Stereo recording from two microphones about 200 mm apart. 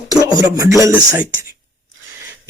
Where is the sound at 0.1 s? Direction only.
20° right (ahead or behind).